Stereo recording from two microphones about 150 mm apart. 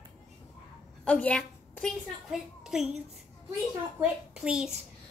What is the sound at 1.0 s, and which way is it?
A woman's voice, 10° left (ahead or behind).